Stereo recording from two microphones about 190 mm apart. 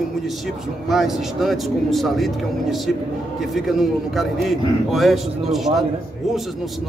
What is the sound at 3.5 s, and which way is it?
Speech, centre (ahead or behind).